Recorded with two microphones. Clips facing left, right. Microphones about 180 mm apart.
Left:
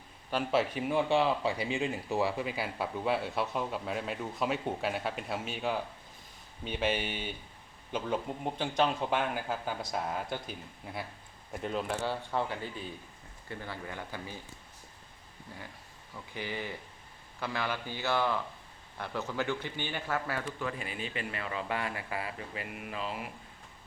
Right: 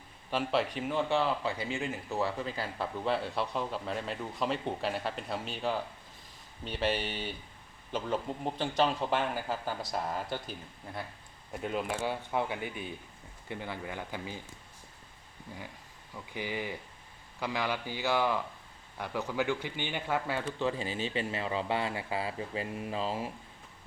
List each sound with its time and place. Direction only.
0.3 s speech: centre (ahead or behind); by 14.3 s 15° right (ahead or behind)
16.1 s speech: 15° right (ahead or behind); by 23.3 s 30° right (ahead or behind)